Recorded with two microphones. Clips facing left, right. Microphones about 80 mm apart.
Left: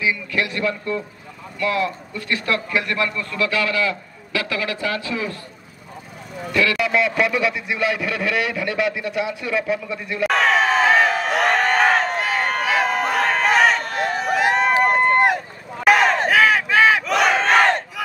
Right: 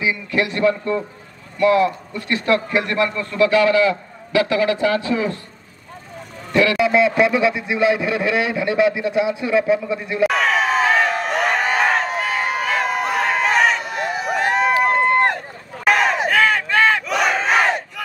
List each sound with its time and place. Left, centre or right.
0.0 s speech: right
6.5 s speech: right
10.2 s a sound: centre
14.8 s run: centre